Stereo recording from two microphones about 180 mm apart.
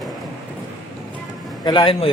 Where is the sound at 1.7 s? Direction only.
25° left (ahead or behind).